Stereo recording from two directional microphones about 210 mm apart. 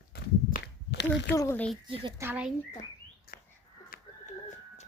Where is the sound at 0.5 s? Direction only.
50° left (ahead or behind).